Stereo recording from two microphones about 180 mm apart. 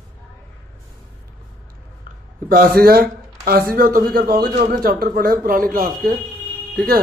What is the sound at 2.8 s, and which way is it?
A man's voice, 60° right (ahead or behind).